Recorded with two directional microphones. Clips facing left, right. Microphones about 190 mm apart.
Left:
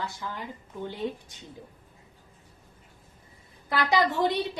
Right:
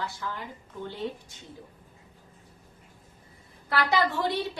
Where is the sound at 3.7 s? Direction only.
15° left (ahead or behind).